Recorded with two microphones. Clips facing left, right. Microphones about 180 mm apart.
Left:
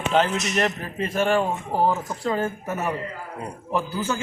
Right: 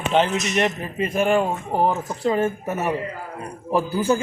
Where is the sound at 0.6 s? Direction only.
15° right (ahead or behind).